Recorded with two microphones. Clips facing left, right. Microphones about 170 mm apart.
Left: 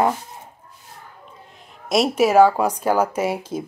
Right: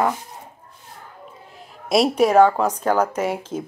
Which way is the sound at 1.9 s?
Centre (ahead or behind).